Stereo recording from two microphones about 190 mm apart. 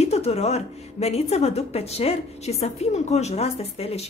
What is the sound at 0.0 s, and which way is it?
A woman's voice, 35° left (ahead or behind).